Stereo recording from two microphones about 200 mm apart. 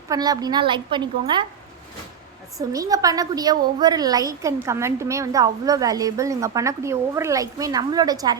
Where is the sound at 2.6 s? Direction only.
15° right (ahead or behind).